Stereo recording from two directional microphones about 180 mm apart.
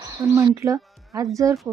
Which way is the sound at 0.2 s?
15° right (ahead or behind).